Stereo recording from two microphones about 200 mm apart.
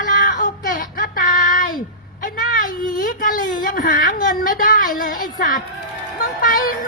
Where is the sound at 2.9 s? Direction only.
45° left (ahead or behind).